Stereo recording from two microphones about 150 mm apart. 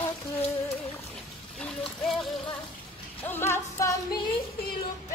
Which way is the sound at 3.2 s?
15° left (ahead or behind).